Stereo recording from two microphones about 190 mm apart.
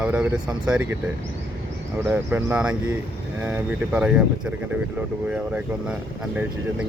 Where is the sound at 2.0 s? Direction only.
10° right (ahead or behind).